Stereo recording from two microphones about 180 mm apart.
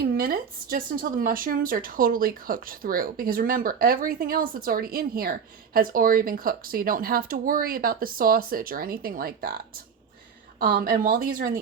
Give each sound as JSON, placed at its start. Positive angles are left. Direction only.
{"t": 0.0, "sound": "speech", "side_deg": -55}